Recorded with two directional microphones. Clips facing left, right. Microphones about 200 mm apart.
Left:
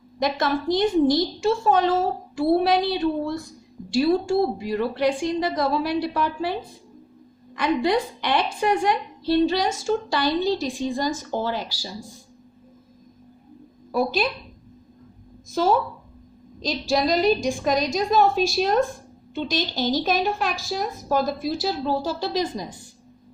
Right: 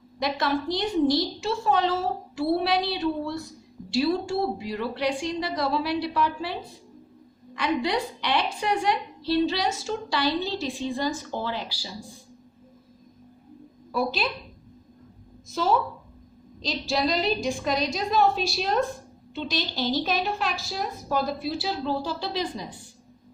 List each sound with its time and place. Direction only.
0.2 s a woman's voice: 45° left (ahead or behind)
13.9 s a woman's voice: 50° left (ahead or behind)
15.4 s a woman's voice: 50° left (ahead or behind)
16.9 s a woman's voice: 50° left (ahead or behind)